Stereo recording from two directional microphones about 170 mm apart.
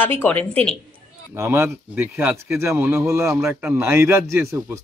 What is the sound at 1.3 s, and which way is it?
Speech, 15° right (ahead or behind).